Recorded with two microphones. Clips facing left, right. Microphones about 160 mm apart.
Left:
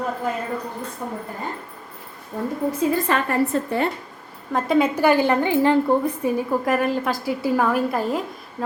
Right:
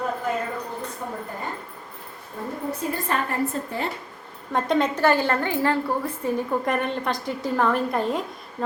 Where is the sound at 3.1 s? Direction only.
90° left.